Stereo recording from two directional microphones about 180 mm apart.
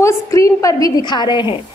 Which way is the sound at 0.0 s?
15° left (ahead or behind).